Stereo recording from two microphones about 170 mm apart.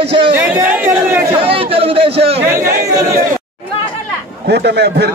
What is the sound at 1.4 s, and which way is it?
Chatter, 35° right (ahead or behind).